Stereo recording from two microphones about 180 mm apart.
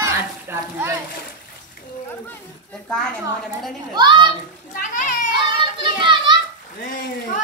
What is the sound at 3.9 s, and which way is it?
Speech, 25° right (ahead or behind).